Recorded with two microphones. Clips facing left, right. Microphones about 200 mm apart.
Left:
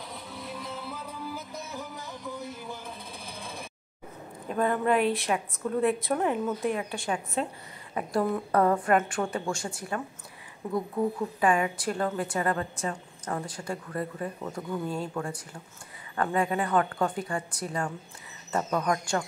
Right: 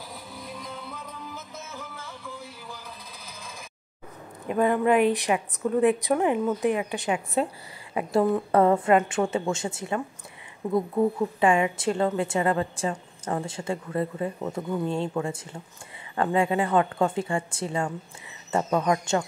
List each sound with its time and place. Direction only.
0.1 s music: centre (ahead or behind); by 2.8 s 20° left (ahead or behind)
3.3 s a sound: 30° left (ahead or behind)
4.5 s a woman's voice: 10° right (ahead or behind)
8.1 s a woman's voice: 25° right (ahead or behind)